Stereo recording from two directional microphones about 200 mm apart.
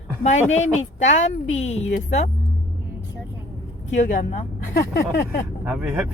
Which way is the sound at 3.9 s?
40° left (ahead or behind).